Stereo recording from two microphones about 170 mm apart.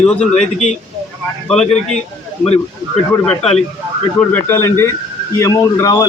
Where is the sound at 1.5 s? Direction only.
Centre (ahead or behind).